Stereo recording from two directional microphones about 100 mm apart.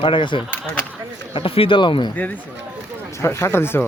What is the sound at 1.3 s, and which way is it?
Speech, 65° left (ahead or behind).